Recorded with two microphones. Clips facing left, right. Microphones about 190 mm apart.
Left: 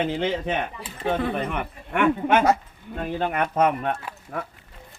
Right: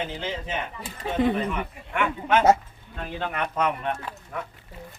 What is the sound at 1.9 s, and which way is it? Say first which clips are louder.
Speech: left 4 dB; 55° left (ahead or behind).